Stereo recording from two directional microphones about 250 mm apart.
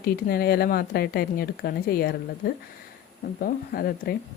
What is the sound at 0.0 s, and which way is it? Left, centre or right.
Speech, left.